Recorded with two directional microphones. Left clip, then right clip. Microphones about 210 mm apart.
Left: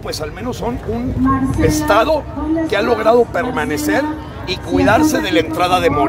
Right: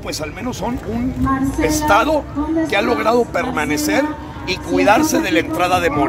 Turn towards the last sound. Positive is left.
turn(degrees=0)  # may be behind; listen again after turning